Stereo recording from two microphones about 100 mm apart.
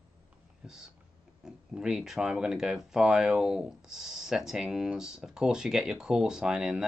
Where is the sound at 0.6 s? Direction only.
5° right (ahead or behind).